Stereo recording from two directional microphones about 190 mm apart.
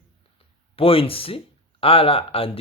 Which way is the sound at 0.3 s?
30° left (ahead or behind).